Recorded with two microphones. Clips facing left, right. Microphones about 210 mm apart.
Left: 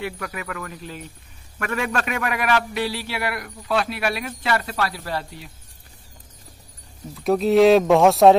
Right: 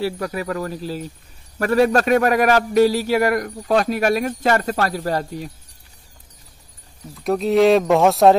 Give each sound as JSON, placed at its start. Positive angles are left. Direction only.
{"t": 0.0, "sound": "a man's voice", "side_deg": -35}
{"t": 7.2, "sound": "speech", "side_deg": 0}